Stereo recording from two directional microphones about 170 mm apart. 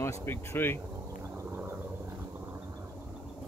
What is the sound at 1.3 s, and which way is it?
Wild animals, 15° right (ahead or behind).